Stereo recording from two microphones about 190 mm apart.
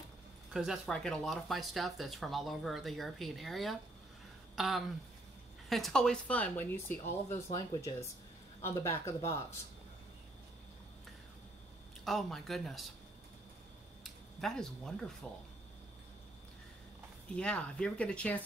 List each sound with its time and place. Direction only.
0.5 s speech: centre (ahead or behind); by 9.4 s 15° left (ahead or behind)
12.0 s speech: centre (ahead or behind)
14.0 s a sound: centre (ahead or behind)
15.2 s speech: centre (ahead or behind)
17.4 s speech: 5° left (ahead or behind)